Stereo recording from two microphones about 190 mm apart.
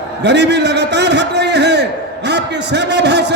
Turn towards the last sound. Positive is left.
turn(degrees=-65)  # may be behind; listen again after turning